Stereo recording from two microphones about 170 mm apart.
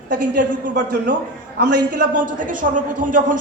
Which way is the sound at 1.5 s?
85° right.